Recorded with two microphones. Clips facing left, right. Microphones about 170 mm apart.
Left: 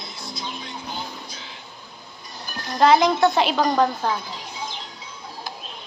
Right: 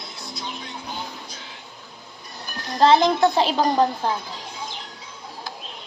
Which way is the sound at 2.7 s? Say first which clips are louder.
Even; 30° right (ahead or behind).